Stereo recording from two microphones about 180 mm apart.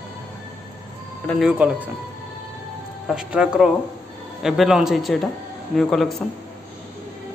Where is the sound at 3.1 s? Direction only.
5° right (ahead or behind).